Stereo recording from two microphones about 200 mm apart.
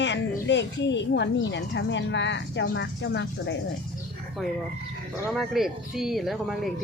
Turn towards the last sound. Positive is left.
turn(degrees=0)  # may be behind; listen again after turning